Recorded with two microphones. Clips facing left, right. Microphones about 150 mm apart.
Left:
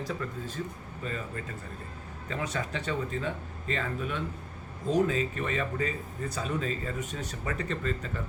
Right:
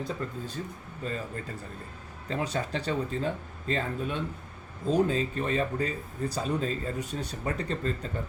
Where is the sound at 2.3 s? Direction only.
30° right (ahead or behind).